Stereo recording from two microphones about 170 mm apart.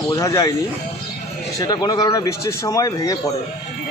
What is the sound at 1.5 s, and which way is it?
Speech, 25° left (ahead or behind).